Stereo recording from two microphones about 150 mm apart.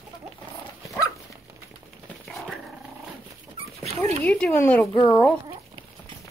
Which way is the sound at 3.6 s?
40° right (ahead or behind).